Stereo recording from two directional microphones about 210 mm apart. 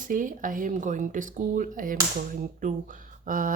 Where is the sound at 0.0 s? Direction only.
40° right (ahead or behind).